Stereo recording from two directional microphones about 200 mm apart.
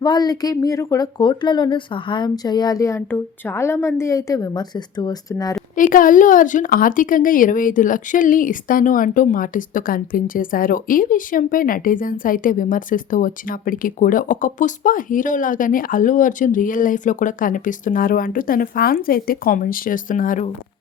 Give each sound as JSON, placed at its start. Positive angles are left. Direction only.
{"t": 0.0, "sound": "speech", "side_deg": 20}
{"t": 5.7, "sound": "speech", "side_deg": 40}